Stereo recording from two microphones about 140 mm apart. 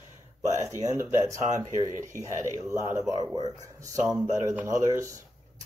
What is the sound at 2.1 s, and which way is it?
Speech, 20° right (ahead or behind).